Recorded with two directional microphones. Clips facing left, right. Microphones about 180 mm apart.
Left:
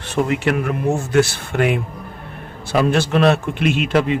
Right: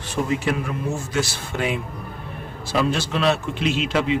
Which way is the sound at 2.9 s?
55° left (ahead or behind).